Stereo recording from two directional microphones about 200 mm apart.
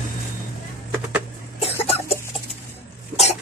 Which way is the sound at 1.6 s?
30° left (ahead or behind).